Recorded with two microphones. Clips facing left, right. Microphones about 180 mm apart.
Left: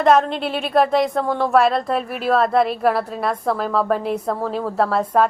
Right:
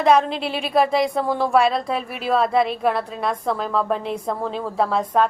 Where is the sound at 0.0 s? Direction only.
Centre (ahead or behind).